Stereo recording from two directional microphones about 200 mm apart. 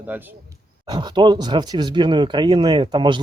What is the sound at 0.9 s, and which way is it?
Speech, 20° right (ahead or behind).